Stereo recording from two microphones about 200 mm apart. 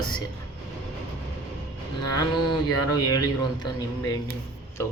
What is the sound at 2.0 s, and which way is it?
Speech, 20° left (ahead or behind).